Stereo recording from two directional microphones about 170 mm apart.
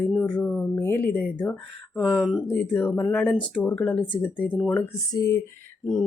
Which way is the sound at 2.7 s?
10° left (ahead or behind).